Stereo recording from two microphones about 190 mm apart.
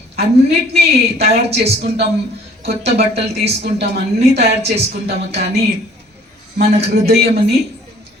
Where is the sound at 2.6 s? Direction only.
55° right (ahead or behind).